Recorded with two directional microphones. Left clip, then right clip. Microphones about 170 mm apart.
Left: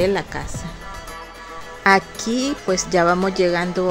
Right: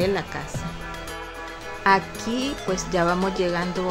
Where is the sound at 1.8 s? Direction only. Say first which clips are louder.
Left 4 dB; 25° left (ahead or behind).